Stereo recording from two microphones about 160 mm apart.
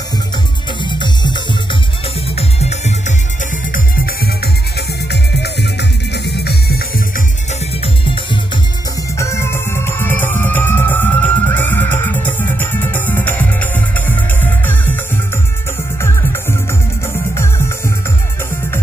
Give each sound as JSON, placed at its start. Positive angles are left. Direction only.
{"t": 0.8, "sound": "music", "side_deg": 30}
{"t": 2.3, "sound": "music", "side_deg": 45}
{"t": 4.7, "sound": "music", "side_deg": 90}
{"t": 9.2, "sound": "music", "side_deg": 15}
{"t": 16.0, "sound": "music", "side_deg": 15}